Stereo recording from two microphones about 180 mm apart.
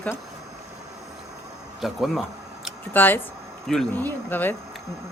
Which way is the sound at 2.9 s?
10° left (ahead or behind).